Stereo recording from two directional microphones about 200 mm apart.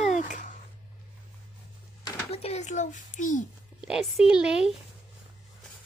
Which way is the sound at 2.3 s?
30° left (ahead or behind).